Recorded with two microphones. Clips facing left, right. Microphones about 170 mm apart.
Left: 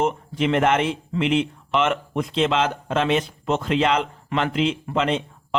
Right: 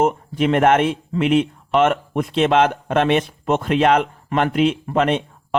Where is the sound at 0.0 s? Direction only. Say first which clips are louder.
Right 4 dB; 50° right (ahead or behind).